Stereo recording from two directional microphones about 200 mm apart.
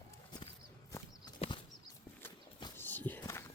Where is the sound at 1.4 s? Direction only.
25° left (ahead or behind).